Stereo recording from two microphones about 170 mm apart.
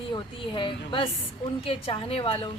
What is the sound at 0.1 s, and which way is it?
A woman's voice, 30° left (ahead or behind).